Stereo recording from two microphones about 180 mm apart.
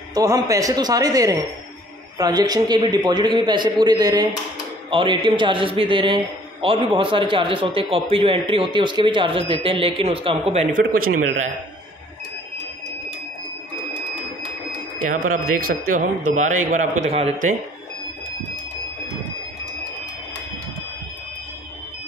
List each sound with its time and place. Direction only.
0.1 s a man's voice: 20° right (ahead or behind); by 11.5 s 50° right (ahead or behind)
15.0 s speech: 50° right (ahead or behind)